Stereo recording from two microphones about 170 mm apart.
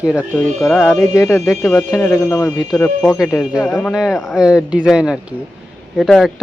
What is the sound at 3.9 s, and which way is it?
Speech, centre (ahead or behind).